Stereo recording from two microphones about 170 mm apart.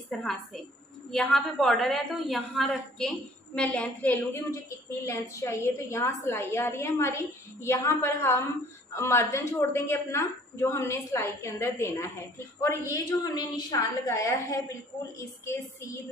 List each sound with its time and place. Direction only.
0.1 s a woman's voice: centre (ahead or behind)